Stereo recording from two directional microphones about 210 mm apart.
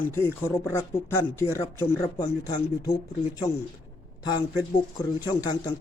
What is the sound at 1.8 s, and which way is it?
Speech, 15° left (ahead or behind).